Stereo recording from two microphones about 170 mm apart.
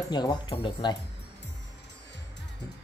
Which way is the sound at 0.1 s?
25° left (ahead or behind).